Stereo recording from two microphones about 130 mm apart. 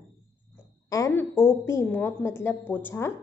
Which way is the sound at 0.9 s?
20° left (ahead or behind).